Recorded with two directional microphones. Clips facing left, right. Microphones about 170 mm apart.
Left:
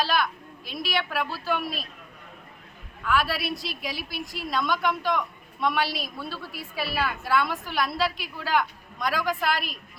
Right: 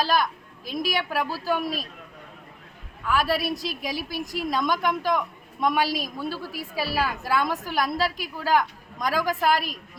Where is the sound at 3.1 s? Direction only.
40° right (ahead or behind).